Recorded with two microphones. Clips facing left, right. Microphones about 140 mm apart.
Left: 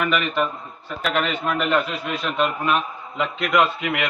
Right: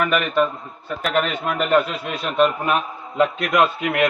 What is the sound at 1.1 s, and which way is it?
A man's voice, 45° right (ahead or behind).